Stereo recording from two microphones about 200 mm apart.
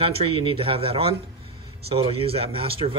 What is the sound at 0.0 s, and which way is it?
A man's voice, 25° right (ahead or behind).